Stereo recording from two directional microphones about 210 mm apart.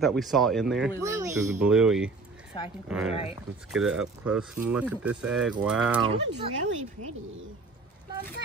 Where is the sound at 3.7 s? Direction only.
5° right (ahead or behind).